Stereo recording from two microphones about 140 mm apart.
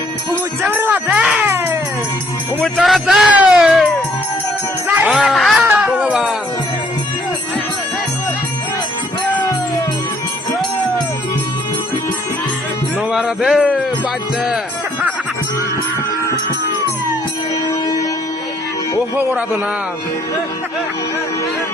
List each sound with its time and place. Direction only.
0.6 s speech: 15° right (ahead or behind)
1.5 s music: 20° right (ahead or behind)
2.6 s speech: centre (ahead or behind)
4.9 s jingle bell: 10° right (ahead or behind)
5.2 s speech: centre (ahead or behind)
5.5 s music: 10° right (ahead or behind)
13.0 s music: 5° right (ahead or behind)